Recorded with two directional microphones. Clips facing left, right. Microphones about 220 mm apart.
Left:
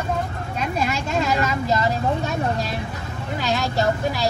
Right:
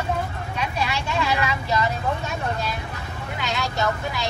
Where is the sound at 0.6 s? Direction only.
45° left (ahead or behind).